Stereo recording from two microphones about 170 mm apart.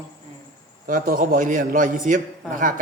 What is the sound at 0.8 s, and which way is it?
A man's voice, 55° right (ahead or behind).